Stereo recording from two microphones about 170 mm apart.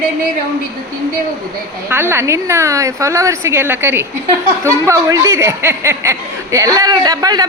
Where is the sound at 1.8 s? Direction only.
15° right (ahead or behind).